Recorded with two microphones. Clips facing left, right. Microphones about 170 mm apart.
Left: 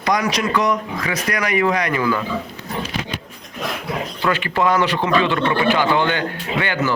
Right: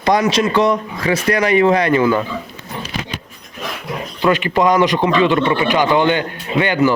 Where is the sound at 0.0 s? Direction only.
30° right (ahead or behind).